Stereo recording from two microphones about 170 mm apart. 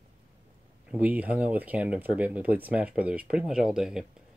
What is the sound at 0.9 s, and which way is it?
Speech, 10° right (ahead or behind).